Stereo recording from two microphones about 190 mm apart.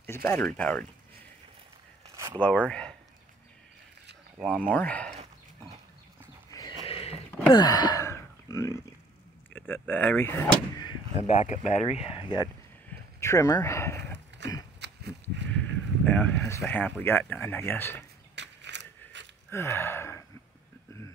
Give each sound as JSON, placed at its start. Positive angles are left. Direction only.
{"t": 0.0, "sound": "speech", "side_deg": 10}
{"t": 2.1, "sound": "a sound", "side_deg": -15}
{"t": 2.4, "sound": "speech", "side_deg": 5}
{"t": 4.4, "sound": "speech", "side_deg": -5}
{"t": 4.7, "sound": "speech", "side_deg": 5}
{"t": 6.9, "sound": "a sound", "side_deg": 30}
{"t": 7.2, "sound": "a sound", "side_deg": 10}
{"t": 7.5, "sound": "speech", "side_deg": 20}
{"t": 11.2, "sound": "speech", "side_deg": 35}
{"t": 13.2, "sound": "speech", "side_deg": 15}
{"t": 14.8, "sound": "a sound", "side_deg": -65}
{"t": 16.1, "sound": "speech", "side_deg": 5}
{"t": 18.3, "sound": "mechanisms", "side_deg": -65}
{"t": 19.5, "sound": "speech", "side_deg": 15}